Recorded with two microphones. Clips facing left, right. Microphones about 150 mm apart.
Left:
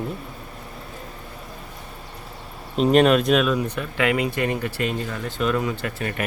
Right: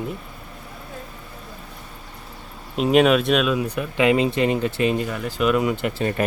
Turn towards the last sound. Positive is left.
turn(degrees=-20)  # may be behind; listen again after turning